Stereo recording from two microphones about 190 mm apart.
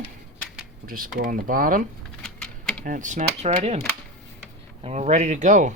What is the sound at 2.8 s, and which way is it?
Speech, 45° right (ahead or behind).